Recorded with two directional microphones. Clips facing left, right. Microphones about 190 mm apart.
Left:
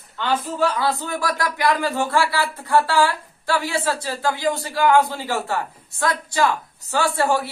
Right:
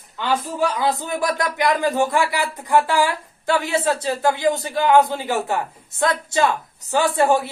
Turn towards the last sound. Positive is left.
turn(degrees=-20)  # may be behind; listen again after turning